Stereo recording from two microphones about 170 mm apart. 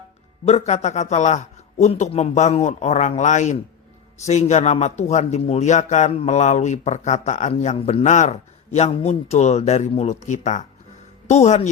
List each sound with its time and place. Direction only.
0.4 s a man's voice: 40° left (ahead or behind)